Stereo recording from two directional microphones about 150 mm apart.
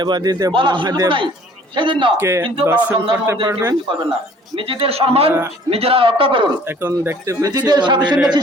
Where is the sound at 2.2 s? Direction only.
15° right (ahead or behind).